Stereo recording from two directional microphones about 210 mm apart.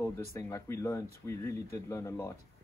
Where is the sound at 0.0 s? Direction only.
15° left (ahead or behind).